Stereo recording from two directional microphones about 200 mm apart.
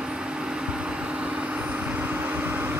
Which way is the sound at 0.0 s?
5° right (ahead or behind).